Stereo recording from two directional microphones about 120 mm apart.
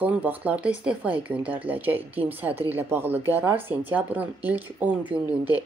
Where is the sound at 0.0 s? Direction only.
15° right (ahead or behind).